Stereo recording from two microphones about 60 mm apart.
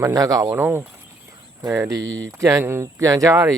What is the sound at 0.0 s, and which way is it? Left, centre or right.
Speech, right.